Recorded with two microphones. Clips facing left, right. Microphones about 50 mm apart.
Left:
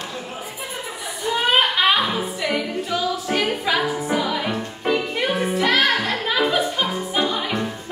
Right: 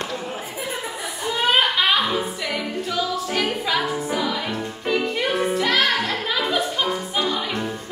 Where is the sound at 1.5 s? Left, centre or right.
Centre.